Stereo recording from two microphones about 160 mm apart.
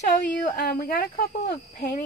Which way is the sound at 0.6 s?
70° left (ahead or behind).